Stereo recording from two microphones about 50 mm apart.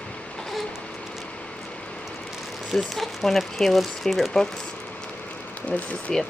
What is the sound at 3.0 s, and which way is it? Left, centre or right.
Speech, centre.